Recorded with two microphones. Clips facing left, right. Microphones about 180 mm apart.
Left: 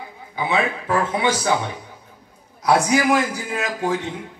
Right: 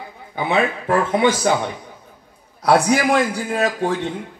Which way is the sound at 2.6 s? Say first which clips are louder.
Right 2 dB; 60° right (ahead or behind).